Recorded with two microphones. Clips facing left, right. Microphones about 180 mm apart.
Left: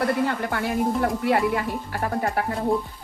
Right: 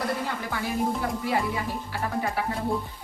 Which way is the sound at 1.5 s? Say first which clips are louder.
Left 4 dB; 50° left (ahead or behind).